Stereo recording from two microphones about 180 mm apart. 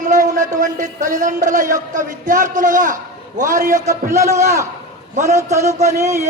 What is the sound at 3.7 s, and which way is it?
Speech, 15° right (ahead or behind).